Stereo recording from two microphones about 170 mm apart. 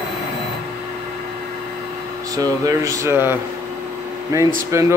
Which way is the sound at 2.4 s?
20° right (ahead or behind).